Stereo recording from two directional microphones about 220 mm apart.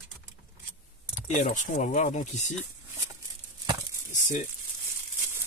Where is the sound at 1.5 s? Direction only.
35° left (ahead or behind).